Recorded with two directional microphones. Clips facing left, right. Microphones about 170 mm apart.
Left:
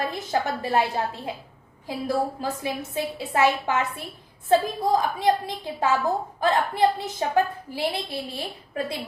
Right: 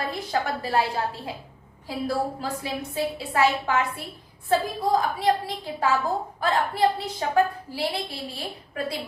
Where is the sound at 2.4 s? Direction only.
20° left (ahead or behind).